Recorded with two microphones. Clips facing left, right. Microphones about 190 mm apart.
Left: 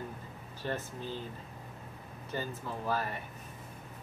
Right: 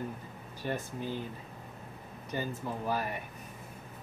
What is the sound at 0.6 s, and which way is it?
Speech, 15° right (ahead or behind).